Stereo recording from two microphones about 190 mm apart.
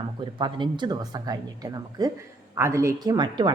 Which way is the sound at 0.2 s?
25° right (ahead or behind).